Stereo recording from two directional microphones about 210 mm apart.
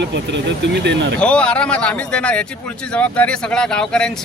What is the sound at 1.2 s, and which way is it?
Speech, 5° left (ahead or behind).